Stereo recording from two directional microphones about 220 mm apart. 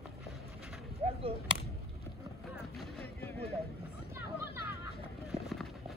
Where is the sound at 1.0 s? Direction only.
25° right (ahead or behind).